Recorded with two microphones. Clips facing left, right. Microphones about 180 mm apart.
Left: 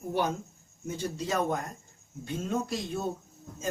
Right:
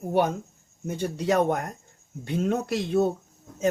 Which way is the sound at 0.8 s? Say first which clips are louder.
Right 6 dB; 65° right (ahead or behind).